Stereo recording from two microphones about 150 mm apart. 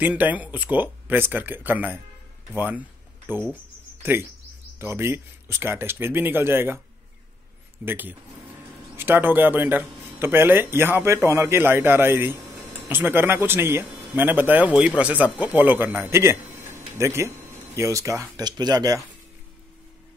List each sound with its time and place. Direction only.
0.0 s speech: 10° right (ahead or behind)
7.8 s speech: 15° right (ahead or behind)